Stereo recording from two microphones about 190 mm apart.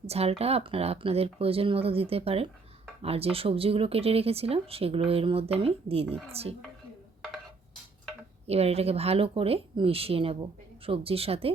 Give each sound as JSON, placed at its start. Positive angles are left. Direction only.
{"t": 0.0, "sound": "speech", "side_deg": -30}
{"t": 8.4, "sound": "speech", "side_deg": -35}